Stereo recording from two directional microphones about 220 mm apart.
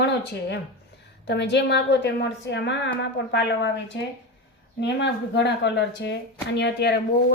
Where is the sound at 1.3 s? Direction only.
50° left (ahead or behind).